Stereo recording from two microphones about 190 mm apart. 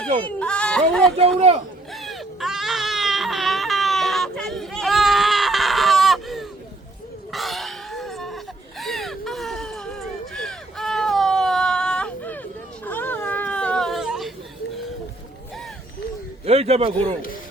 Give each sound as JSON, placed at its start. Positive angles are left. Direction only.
{"t": 0.3, "sound": "speech", "side_deg": 5}
{"t": 1.9, "sound": "baby cry", "side_deg": 0}
{"t": 7.3, "sound": "a sound", "side_deg": 0}
{"t": 16.5, "sound": "a man's voice", "side_deg": -30}